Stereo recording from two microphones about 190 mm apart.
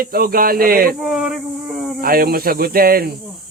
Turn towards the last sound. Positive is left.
turn(degrees=-50)  # may be behind; listen again after turning